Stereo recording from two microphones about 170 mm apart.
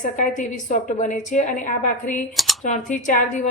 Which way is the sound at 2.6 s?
45° left (ahead or behind).